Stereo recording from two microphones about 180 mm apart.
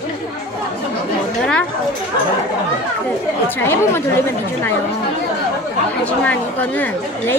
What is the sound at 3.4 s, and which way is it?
Speech, 10° left (ahead or behind).